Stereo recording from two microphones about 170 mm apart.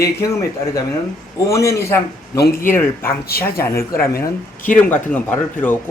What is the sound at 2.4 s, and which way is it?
Speech, 60° left (ahead or behind).